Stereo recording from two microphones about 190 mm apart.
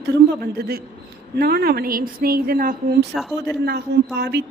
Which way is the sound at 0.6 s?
55° right (ahead or behind).